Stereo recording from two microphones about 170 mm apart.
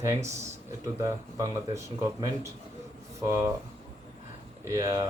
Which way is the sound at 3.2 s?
20° right (ahead or behind).